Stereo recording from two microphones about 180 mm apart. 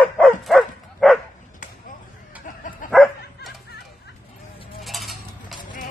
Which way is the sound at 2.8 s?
Centre (ahead or behind).